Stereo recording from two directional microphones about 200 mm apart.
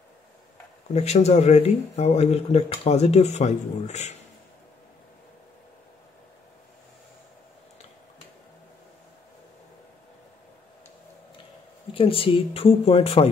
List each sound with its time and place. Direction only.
0.9 s speech: 35° left (ahead or behind)
11.9 s speech: 25° left (ahead or behind)